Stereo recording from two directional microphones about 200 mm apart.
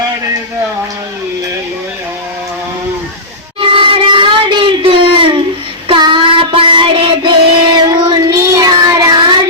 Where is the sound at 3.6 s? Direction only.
25° right (ahead or behind).